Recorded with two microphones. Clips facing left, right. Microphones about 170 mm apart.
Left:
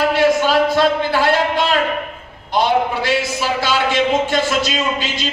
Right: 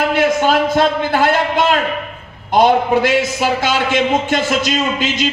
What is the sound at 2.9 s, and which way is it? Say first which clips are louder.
Speech: right 5 dB; 45° right (ahead or behind).